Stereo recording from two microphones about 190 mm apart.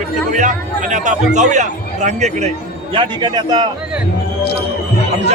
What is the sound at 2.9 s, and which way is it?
Speech, 25° right (ahead or behind).